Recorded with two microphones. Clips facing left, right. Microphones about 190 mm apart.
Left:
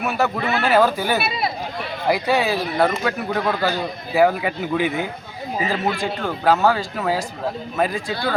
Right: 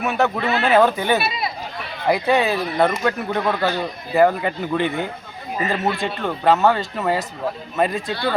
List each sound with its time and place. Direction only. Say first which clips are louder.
0.0 s speech: right 1 dB; centre (ahead or behind)